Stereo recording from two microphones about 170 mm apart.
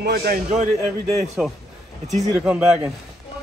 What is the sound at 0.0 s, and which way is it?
Speech, 65° right (ahead or behind).